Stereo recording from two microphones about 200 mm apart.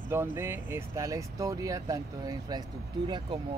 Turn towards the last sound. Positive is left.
turn(degrees=-20)  # may be behind; listen again after turning